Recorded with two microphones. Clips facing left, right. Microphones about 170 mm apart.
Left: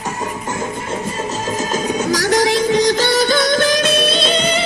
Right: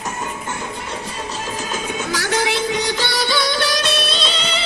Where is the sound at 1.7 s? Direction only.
40° left (ahead or behind).